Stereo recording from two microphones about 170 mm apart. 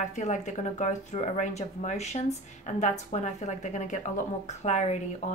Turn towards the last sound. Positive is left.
turn(degrees=45)  # may be behind; listen again after turning